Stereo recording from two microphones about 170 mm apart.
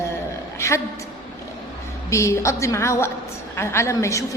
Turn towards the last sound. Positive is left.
turn(degrees=15)  # may be behind; listen again after turning